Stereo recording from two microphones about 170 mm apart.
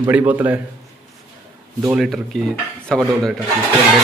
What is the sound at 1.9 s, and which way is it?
Speech, centre (ahead or behind).